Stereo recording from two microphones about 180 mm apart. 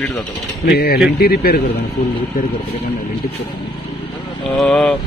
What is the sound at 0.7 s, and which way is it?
Speech, 65° left (ahead or behind).